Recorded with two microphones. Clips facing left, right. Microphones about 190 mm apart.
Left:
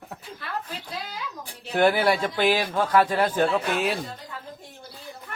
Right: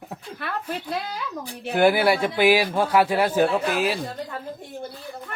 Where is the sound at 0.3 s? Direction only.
60° right (ahead or behind).